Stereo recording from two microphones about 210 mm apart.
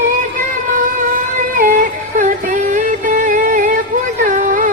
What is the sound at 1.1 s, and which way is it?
Music, 40° right (ahead or behind).